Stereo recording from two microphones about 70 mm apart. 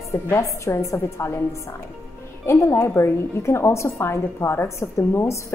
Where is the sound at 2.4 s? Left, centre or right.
Left.